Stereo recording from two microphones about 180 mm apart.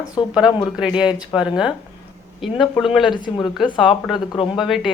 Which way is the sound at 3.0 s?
25° left (ahead or behind).